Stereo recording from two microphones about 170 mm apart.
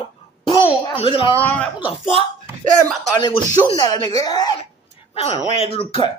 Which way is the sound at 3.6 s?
20° left (ahead or behind).